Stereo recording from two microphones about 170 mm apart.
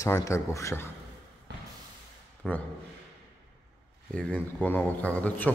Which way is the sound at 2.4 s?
Centre (ahead or behind).